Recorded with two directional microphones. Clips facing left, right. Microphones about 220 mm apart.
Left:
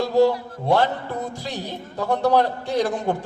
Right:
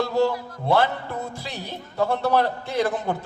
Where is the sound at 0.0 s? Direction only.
15° left (ahead or behind).